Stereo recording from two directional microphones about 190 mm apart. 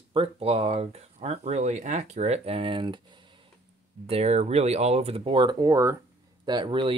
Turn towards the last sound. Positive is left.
turn(degrees=-25)  # may be behind; listen again after turning